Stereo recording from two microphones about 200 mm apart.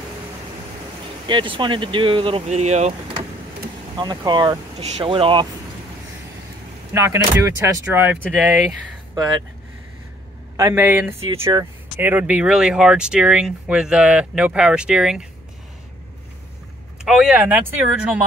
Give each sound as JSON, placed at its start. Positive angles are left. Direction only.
{"t": 1.2, "sound": "speech", "side_deg": -25}
{"t": 3.9, "sound": "speech", "side_deg": -20}
{"t": 6.9, "sound": "speech", "side_deg": -15}
{"t": 10.5, "sound": "speech", "side_deg": -15}
{"t": 17.0, "sound": "speech", "side_deg": -5}